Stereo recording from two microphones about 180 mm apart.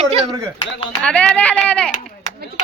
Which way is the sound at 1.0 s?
5° left (ahead or behind).